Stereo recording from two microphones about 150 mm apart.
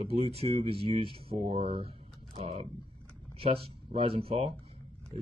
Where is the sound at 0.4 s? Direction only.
40° right (ahead or behind).